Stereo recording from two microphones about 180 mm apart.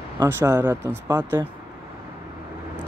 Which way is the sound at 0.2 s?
15° right (ahead or behind).